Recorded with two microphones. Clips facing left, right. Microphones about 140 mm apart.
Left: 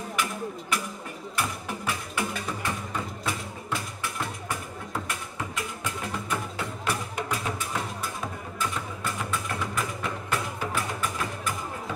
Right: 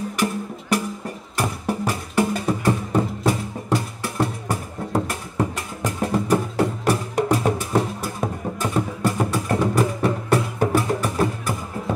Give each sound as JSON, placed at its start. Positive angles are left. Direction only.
{"t": 0.2, "sound": "music", "side_deg": -35}